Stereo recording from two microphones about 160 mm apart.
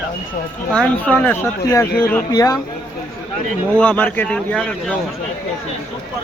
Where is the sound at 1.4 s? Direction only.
20° left (ahead or behind).